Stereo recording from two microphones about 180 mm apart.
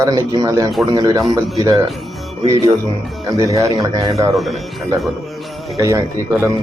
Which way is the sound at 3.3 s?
20° right (ahead or behind).